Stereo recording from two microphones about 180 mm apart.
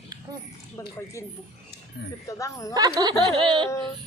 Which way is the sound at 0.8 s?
15° left (ahead or behind).